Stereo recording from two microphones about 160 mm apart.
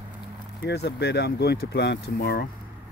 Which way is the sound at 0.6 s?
90° left.